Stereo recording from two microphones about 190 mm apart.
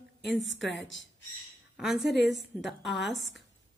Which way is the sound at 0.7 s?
75° left (ahead or behind).